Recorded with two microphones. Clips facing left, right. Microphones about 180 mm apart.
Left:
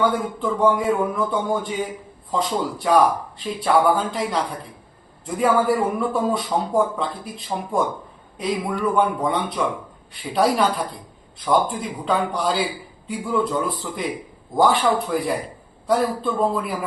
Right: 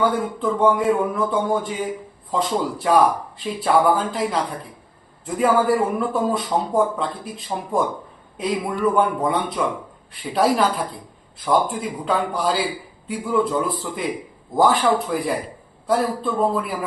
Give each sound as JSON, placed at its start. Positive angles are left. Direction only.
{"t": 0.0, "sound": "a man's voice", "side_deg": 0}
{"t": 9.0, "sound": "a man's voice", "side_deg": -5}